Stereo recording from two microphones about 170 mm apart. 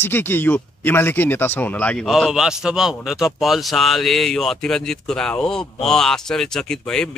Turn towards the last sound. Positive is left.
turn(degrees=5)  # may be behind; listen again after turning